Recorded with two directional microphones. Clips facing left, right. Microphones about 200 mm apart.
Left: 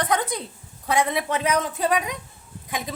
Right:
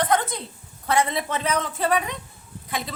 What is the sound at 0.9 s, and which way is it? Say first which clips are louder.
A woman's voice: even; 15° left (ahead or behind).